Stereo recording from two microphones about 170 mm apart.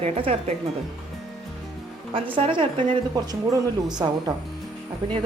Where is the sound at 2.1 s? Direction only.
30° right (ahead or behind).